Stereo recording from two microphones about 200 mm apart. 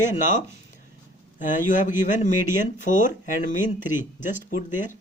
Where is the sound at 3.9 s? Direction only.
10° right (ahead or behind).